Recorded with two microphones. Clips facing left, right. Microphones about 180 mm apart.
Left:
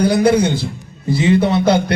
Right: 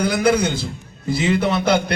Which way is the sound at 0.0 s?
35° left (ahead or behind).